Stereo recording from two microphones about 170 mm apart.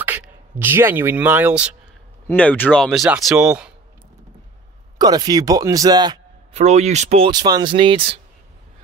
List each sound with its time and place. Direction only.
0.0 s speech: 10° right (ahead or behind)
2.2 s speech: 10° left (ahead or behind); by 3.7 s 5° right (ahead or behind)
4.9 s speech: 25° right (ahead or behind)
6.5 s speech: 40° right (ahead or behind)
7.2 s speech: 25° right (ahead or behind)